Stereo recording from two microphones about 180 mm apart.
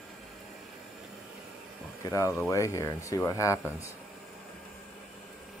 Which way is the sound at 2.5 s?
15° left (ahead or behind).